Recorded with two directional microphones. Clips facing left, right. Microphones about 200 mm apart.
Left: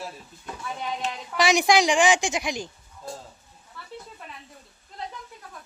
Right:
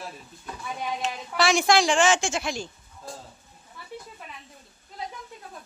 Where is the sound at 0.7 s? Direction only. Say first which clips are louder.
Right 1 dB; 10° right (ahead or behind).